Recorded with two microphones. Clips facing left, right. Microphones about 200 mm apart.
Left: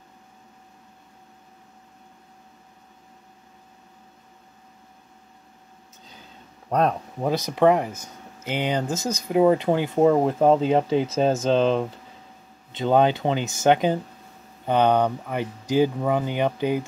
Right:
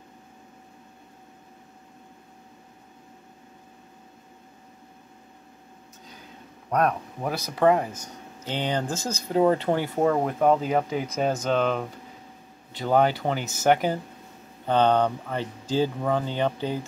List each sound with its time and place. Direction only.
6.7 s speech: 25° left (ahead or behind)